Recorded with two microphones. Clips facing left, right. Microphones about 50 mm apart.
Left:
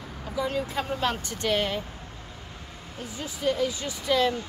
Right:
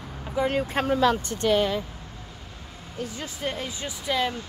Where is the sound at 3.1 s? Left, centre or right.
Right.